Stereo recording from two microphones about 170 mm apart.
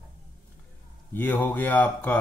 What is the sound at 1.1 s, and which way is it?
Speech, 10° left (ahead or behind).